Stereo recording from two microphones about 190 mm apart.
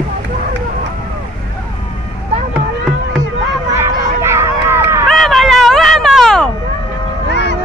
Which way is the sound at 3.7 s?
15° right (ahead or behind).